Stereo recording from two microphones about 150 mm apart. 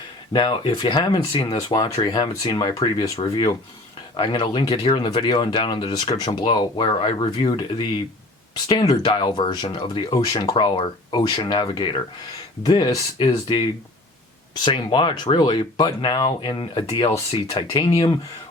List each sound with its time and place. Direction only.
0.3 s speech: 30° left (ahead or behind)